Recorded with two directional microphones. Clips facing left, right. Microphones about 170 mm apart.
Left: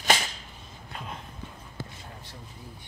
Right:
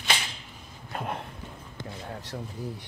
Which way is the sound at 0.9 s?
60° right (ahead or behind).